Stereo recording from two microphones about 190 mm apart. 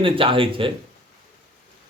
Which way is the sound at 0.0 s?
30° right (ahead or behind).